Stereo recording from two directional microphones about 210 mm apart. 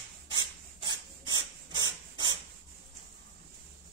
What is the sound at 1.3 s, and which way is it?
Dog, 20° right (ahead or behind).